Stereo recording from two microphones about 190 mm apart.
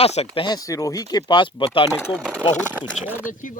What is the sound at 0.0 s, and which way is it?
Speech, 35° left (ahead or behind).